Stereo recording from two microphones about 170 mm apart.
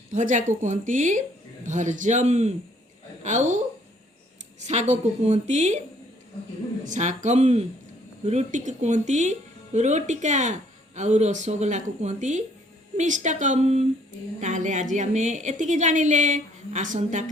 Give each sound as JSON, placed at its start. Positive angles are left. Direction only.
{"t": 0.1, "sound": "a woman's voice", "side_deg": -45}
{"t": 4.6, "sound": "a woman's voice", "side_deg": -40}
{"t": 6.8, "sound": "a woman's voice", "side_deg": -45}